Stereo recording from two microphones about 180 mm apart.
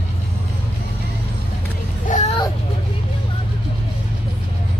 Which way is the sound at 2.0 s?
40° left (ahead or behind).